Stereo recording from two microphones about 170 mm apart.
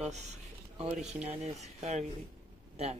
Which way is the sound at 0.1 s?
40° right (ahead or behind).